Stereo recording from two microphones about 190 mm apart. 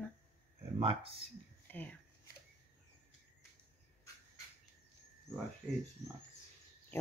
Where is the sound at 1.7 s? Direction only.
10° left (ahead or behind).